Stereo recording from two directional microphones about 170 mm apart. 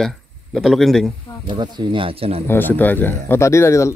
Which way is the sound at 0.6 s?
Centre (ahead or behind).